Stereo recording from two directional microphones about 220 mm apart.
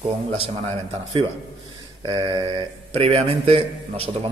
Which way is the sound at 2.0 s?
20° right (ahead or behind).